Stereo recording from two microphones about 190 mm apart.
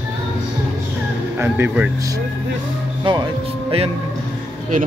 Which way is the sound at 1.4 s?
10° right (ahead or behind).